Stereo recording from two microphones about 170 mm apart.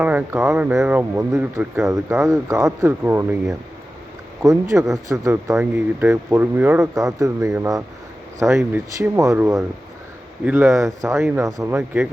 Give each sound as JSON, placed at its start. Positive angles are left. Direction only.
{"t": 0.0, "sound": "speech", "side_deg": -10}
{"t": 4.4, "sound": "speech", "side_deg": -20}